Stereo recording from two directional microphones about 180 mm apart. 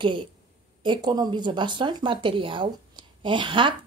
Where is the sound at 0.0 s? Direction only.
25° right (ahead or behind).